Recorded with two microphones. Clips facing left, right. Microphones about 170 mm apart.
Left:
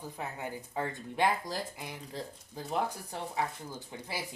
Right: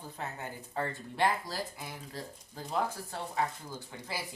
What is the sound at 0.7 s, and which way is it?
A woman's voice, 15° left (ahead or behind).